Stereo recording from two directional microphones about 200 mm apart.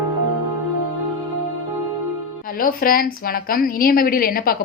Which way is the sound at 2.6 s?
45° left (ahead or behind).